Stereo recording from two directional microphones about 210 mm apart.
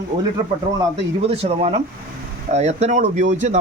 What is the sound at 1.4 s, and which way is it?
A man's voice, 30° right (ahead or behind).